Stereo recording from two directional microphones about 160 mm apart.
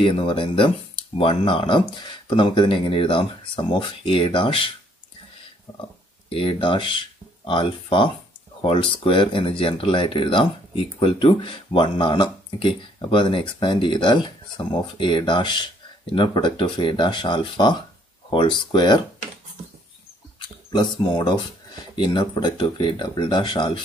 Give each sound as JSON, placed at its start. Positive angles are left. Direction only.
{"t": 0.0, "sound": "speech", "side_deg": 35}
{"t": 6.2, "sound": "speech", "side_deg": 35}
{"t": 20.3, "sound": "speech", "side_deg": 30}